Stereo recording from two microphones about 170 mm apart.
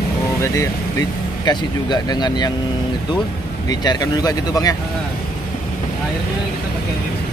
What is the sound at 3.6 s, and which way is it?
Speech, 25° left (ahead or behind).